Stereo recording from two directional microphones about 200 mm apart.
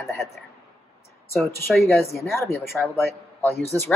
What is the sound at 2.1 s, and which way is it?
Speech, 15° left (ahead or behind).